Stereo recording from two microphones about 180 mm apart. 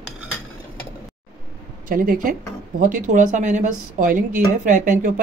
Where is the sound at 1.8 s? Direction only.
50° right (ahead or behind).